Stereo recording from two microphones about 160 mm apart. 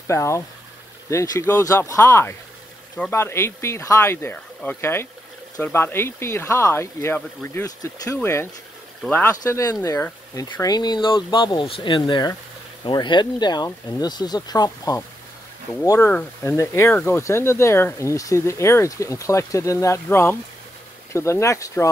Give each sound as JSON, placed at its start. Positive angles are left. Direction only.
{"t": 0.0, "sound": "speech", "side_deg": 20}